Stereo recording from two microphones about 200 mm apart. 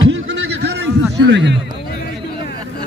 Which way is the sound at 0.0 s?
65° right (ahead or behind).